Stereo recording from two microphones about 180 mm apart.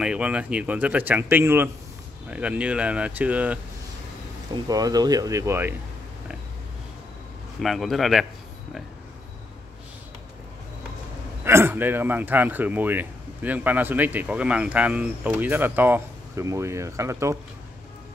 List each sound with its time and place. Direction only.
0.0 s speech: 5° right (ahead or behind)
4.6 s speech: 20° right (ahead or behind)
7.6 s a man's voice: centre (ahead or behind)
11.4 s speech: 15° right (ahead or behind)